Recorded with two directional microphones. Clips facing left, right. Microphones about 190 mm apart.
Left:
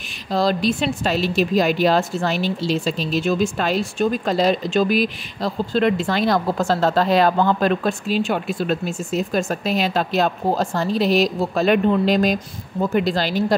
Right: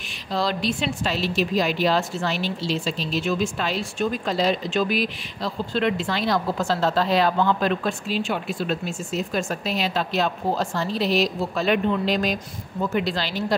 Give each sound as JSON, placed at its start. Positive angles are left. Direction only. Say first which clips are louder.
{"t": 0.3, "sound": "a woman's voice", "louder": "left 5 dB", "side_deg": 45}